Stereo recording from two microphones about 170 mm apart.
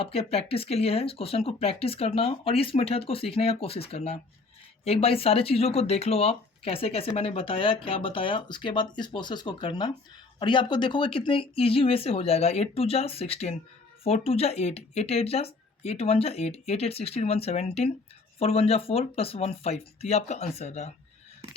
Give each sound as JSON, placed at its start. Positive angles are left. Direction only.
{"t": 0.0, "sound": "speech", "side_deg": 35}